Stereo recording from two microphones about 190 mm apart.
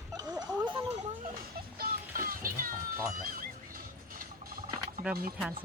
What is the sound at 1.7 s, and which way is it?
Music, 50° right (ahead or behind).